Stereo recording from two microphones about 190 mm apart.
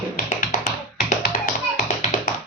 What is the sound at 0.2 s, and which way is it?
Tap, 45° left (ahead or behind).